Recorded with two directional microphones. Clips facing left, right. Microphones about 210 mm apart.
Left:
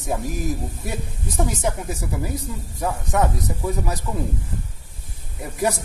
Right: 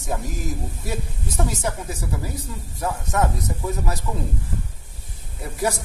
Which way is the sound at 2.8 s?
15° left (ahead or behind).